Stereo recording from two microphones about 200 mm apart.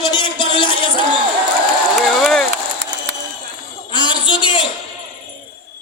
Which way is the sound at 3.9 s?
25° left (ahead or behind).